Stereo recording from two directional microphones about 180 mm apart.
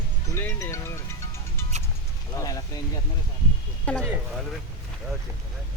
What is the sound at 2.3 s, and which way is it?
Speech, 20° left (ahead or behind).